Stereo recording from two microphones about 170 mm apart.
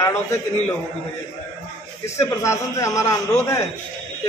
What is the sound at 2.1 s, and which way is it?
A man's voice, 15° left (ahead or behind).